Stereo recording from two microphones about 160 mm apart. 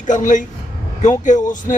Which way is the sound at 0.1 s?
50° left (ahead or behind).